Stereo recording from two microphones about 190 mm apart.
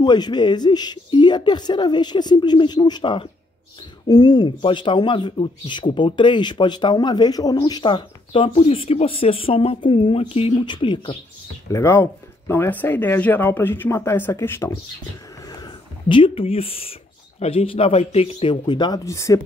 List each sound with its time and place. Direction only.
0.0 s speech: 20° left (ahead or behind)
11.7 s speech: 15° left (ahead or behind)
15.6 s speech: 25° left (ahead or behind)